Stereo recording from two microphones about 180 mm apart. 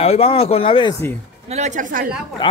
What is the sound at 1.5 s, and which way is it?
Speech, 40° right (ahead or behind).